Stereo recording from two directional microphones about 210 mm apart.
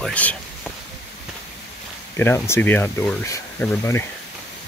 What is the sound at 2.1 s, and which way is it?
Speech, 10° left (ahead or behind).